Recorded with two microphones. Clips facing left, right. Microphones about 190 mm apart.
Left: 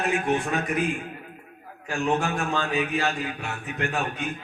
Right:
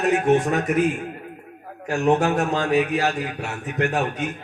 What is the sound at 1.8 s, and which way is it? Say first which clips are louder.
A man's voice: right 6 dB; 70° right (ahead or behind).